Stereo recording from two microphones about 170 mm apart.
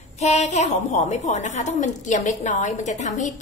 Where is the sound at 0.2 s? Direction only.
40° left (ahead or behind).